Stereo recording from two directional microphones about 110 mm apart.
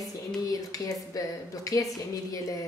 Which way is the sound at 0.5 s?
35° left (ahead or behind).